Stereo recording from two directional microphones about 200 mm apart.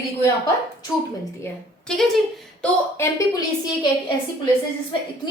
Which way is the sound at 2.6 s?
15° left (ahead or behind).